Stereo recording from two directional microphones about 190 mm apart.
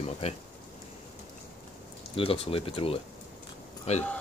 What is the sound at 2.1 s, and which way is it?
Speech, 30° left (ahead or behind).